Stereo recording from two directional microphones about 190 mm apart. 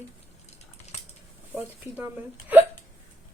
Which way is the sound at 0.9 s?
35° left (ahead or behind).